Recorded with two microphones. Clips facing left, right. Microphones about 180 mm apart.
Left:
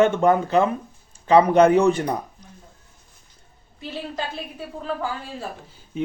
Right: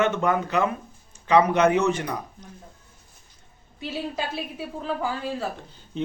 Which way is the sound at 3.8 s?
5° right (ahead or behind).